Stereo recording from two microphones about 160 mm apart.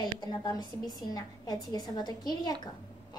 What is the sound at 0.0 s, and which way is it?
A woman's voice, 25° left (ahead or behind).